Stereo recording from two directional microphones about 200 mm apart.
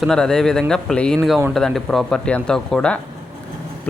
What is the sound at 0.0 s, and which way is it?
Speech, 5° left (ahead or behind).